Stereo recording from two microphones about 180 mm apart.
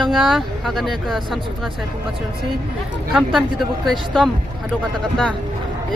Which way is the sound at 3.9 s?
Centre (ahead or behind).